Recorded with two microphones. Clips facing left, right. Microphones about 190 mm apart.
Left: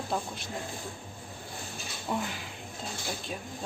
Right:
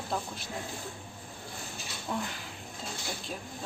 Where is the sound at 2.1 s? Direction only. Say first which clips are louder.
Left 2 dB; 5° left (ahead or behind).